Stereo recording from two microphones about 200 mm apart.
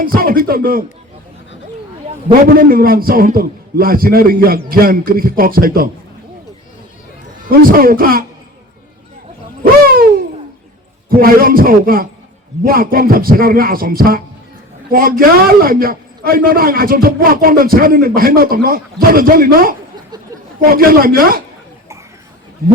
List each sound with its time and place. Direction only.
0.0 s a man's voice: 45° right (ahead or behind)
2.0 s a man's voice: 45° right (ahead or behind)
7.4 s a man's voice: 45° right (ahead or behind)
9.8 s a sound: 45° right (ahead or behind)
11.1 s a man's voice: 45° right (ahead or behind)